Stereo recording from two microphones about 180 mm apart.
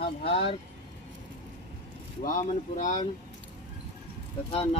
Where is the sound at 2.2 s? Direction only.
45° left (ahead or behind).